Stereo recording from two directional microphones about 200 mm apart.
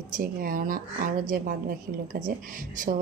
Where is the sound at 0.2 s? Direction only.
45° right (ahead or behind).